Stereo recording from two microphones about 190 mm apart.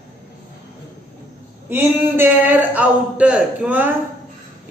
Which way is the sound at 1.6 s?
10° right (ahead or behind).